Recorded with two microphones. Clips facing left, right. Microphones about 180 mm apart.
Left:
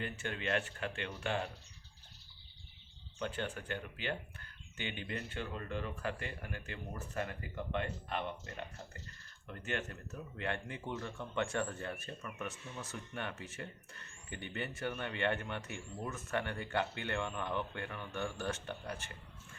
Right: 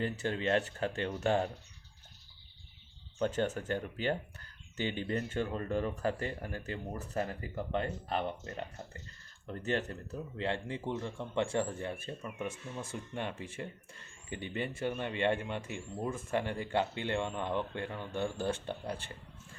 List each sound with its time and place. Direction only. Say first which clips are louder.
0.0 s speech: right 7 dB; 35° right (ahead or behind)
3.2 s speech: right 7 dB; 40° right (ahead or behind)